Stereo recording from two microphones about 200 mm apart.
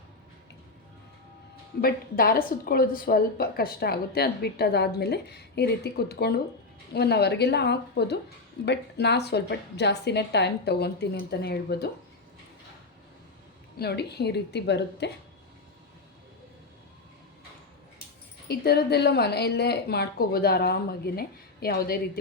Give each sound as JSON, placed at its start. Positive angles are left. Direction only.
{"t": 1.8, "sound": "a woman's voice", "side_deg": 50}
{"t": 13.7, "sound": "a woman's voice", "side_deg": 55}
{"t": 18.4, "sound": "a woman's voice", "side_deg": 50}